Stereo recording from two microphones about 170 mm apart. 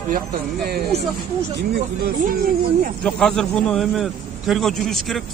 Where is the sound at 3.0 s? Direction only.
5° left (ahead or behind).